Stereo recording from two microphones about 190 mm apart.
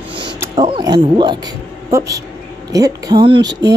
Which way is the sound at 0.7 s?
25° right (ahead or behind).